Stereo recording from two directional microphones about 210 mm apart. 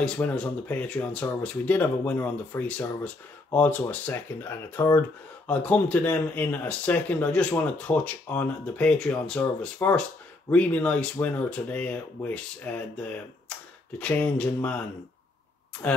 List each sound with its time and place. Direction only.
0.0 s speech: 5° left (ahead or behind)
13.9 s speech: 5° left (ahead or behind)
15.8 s speech: 10° left (ahead or behind)